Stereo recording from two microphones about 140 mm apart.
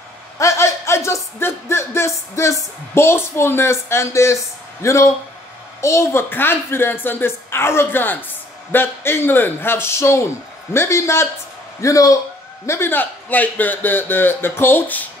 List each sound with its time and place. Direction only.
0.4 s a child's voice: 20° left (ahead or behind)